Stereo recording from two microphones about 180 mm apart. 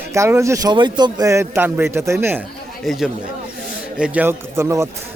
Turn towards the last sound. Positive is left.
turn(degrees=-15)  # may be behind; listen again after turning